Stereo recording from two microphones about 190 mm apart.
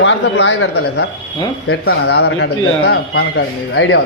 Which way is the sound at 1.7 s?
55° left (ahead or behind).